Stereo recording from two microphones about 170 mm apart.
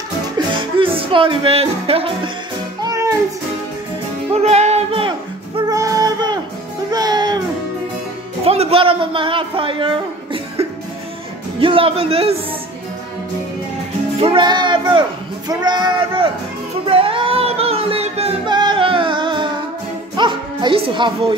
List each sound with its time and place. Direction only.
0.6 s music: 30° right (ahead or behind)
2.8 s music: 20° right (ahead or behind)
4.3 s music: 40° right (ahead or behind)
5.7 s music: 20° right (ahead or behind)
8.5 s a sound: 35° right (ahead or behind)
11.6 s music: 30° right (ahead or behind)
14.2 s speech: 30° right (ahead or behind)
16.8 s music: 30° right (ahead or behind)